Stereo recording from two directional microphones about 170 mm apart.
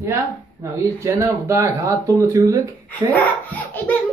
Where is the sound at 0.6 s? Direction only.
15° right (ahead or behind).